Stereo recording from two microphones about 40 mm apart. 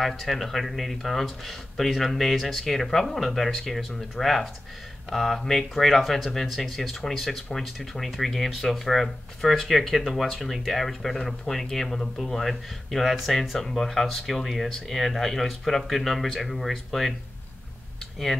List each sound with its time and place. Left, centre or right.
0.1 s speech: centre
10.2 s speech: centre